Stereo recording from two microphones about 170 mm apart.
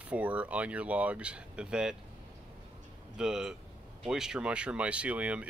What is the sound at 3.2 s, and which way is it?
Speech, 5° right (ahead or behind).